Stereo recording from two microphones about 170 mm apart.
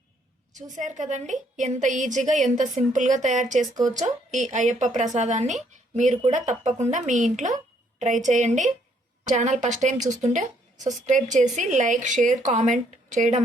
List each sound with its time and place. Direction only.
0.5 s a woman's voice: 45° right (ahead or behind)